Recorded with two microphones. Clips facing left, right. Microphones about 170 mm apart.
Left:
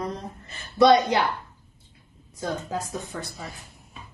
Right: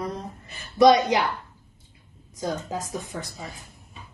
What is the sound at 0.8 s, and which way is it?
Speech, 15° right (ahead or behind).